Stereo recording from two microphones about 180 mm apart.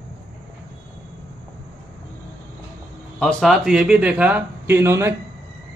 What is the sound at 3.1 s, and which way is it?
Speech, centre (ahead or behind).